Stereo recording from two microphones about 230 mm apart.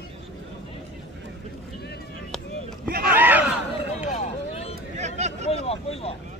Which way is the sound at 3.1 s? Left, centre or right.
Centre.